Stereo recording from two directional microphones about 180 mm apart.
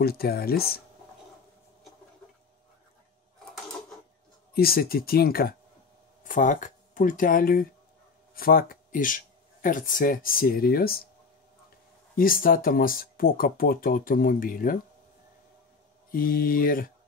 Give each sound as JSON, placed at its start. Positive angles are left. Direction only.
{"t": 0.0, "sound": "speech", "side_deg": 60}
{"t": 4.6, "sound": "speech", "side_deg": 55}
{"t": 6.2, "sound": "speech", "side_deg": 45}
{"t": 12.2, "sound": "speech", "side_deg": 50}
{"t": 16.1, "sound": "speech", "side_deg": 55}